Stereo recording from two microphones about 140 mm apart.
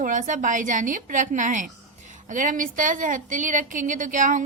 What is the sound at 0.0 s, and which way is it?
A woman's voice, 65° right (ahead or behind).